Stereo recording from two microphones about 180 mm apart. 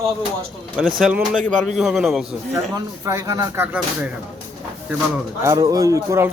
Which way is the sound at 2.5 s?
20° right (ahead or behind).